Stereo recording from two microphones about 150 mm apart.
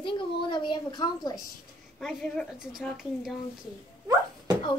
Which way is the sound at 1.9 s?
5° left (ahead or behind).